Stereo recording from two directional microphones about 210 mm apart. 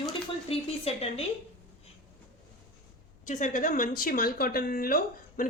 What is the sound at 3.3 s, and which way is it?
Speech, 35° left (ahead or behind).